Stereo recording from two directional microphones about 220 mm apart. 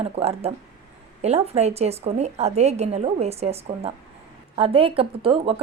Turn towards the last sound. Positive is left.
turn(degrees=-25)  # may be behind; listen again after turning